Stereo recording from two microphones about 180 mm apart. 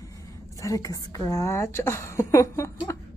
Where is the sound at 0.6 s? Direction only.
20° left (ahead or behind).